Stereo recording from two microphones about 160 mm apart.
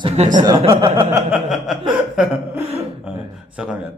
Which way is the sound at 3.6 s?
5° right (ahead or behind).